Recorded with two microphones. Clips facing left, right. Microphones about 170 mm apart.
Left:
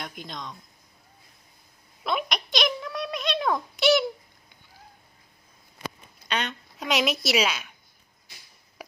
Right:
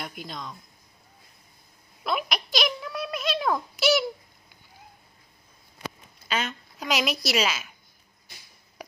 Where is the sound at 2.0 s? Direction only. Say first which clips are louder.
Even; centre (ahead or behind).